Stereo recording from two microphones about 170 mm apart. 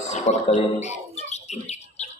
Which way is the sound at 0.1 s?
40° left (ahead or behind).